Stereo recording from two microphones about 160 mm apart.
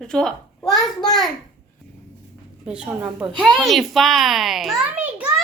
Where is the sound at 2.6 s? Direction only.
5° right (ahead or behind).